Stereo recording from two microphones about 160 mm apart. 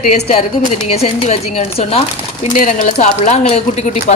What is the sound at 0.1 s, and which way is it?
Speech, 45° left (ahead or behind).